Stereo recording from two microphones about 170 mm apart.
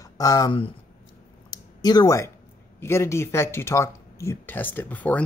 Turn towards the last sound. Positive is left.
turn(degrees=10)  # may be behind; listen again after turning